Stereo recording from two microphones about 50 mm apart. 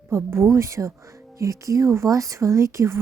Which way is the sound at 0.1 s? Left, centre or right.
Right.